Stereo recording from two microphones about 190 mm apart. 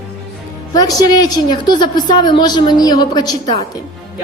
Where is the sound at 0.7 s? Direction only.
20° left (ahead or behind).